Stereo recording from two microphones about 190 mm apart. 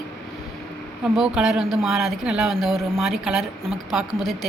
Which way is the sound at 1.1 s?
Centre (ahead or behind).